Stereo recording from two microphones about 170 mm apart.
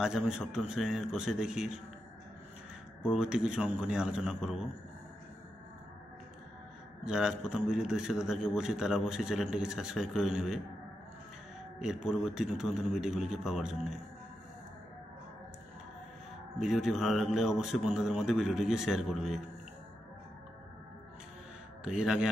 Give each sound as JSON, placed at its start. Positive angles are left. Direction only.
{"t": 0.0, "sound": "a man's voice", "side_deg": -5}
{"t": 3.0, "sound": "a man's voice", "side_deg": -5}
{"t": 7.1, "sound": "a man's voice", "side_deg": -5}
{"t": 11.8, "sound": "a man's voice", "side_deg": -5}
{"t": 16.5, "sound": "a man's voice", "side_deg": 0}
{"t": 21.8, "sound": "a man's voice", "side_deg": -5}